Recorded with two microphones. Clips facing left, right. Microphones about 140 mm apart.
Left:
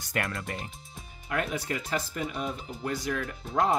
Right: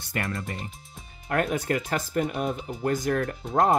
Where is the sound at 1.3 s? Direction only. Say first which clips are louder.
Right 6 dB; 50° right (ahead or behind).